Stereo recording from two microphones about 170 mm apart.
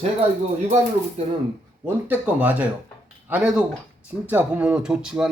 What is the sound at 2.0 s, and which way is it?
Speech, 10° right (ahead or behind).